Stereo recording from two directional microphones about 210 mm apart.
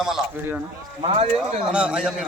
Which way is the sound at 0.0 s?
5° right (ahead or behind).